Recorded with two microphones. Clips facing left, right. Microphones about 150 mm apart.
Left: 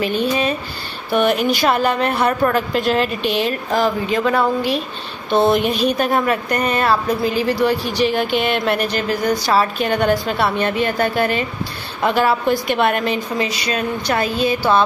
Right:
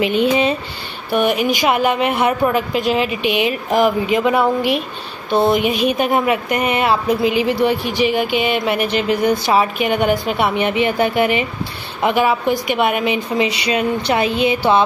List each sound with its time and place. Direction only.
0.0 s a woman's voice: 20° right (ahead or behind)
1.1 s a woman's voice: 10° right (ahead or behind)